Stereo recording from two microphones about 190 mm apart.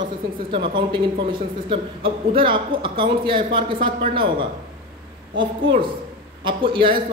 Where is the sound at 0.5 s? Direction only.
25° right (ahead or behind).